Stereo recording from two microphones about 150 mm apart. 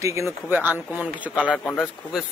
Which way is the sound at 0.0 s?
20° right (ahead or behind).